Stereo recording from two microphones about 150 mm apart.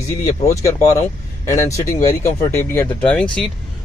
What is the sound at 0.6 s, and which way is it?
Speech, 20° left (ahead or behind).